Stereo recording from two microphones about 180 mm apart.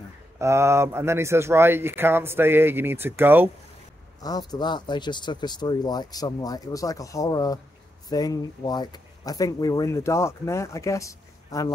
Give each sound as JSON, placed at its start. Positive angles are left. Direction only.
{"t": 0.4, "sound": "speech", "side_deg": -15}
{"t": 4.2, "sound": "speech", "side_deg": 20}